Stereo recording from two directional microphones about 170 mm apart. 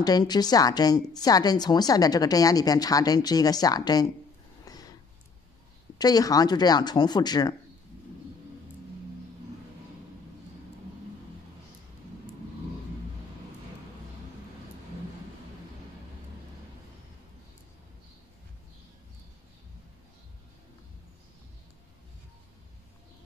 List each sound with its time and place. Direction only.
0.0 s a woman's voice: 25° left (ahead or behind)
4.7 s a sound: 20° left (ahead or behind)
5.9 s a woman's voice: 20° left (ahead or behind)